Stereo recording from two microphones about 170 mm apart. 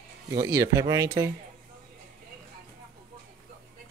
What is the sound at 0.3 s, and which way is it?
Speech, 20° right (ahead or behind).